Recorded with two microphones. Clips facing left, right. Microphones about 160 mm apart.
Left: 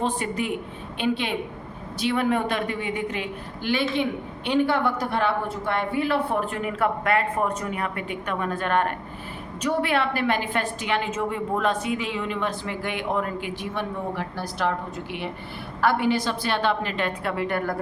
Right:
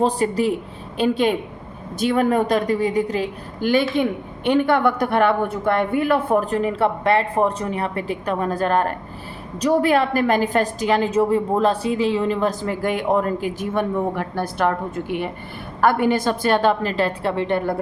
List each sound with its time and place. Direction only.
0.0 s a woman's voice: 35° right (ahead or behind)